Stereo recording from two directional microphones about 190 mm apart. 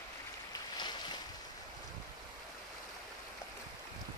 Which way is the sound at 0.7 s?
25° left (ahead or behind).